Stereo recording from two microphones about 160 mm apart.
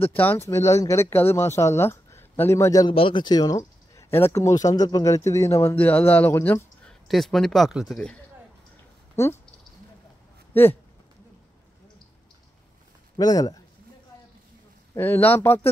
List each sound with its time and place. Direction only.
0.1 s speech: 10° left (ahead or behind)
2.9 s speech: 35° left (ahead or behind); by 6.6 s 15° left (ahead or behind)
6.9 s speech: centre (ahead or behind)
9.1 s speech: 15° left (ahead or behind)
10.5 s speech: 15° left (ahead or behind)
13.2 s speech: 25° left (ahead or behind)
15.0 s speech: 10° left (ahead or behind)